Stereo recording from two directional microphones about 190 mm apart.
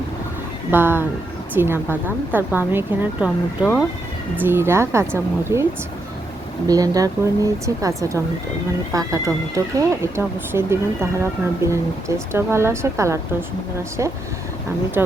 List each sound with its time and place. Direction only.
0.7 s speech: 10° right (ahead or behind)
6.7 s speech: 20° right (ahead or behind)